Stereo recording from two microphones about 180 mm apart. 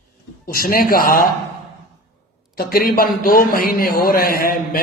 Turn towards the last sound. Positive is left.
turn(degrees=55)  # may be behind; listen again after turning